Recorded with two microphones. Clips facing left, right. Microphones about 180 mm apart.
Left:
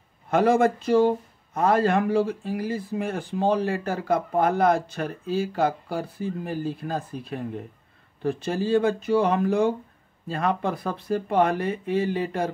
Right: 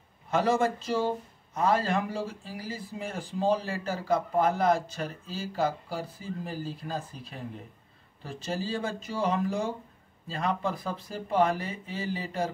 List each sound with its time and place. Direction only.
0.3 s speech: 55° left (ahead or behind)